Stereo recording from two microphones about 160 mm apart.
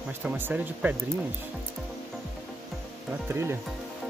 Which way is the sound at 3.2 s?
15° right (ahead or behind).